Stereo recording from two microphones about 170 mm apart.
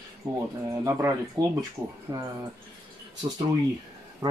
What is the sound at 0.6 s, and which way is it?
Speech, 20° right (ahead or behind).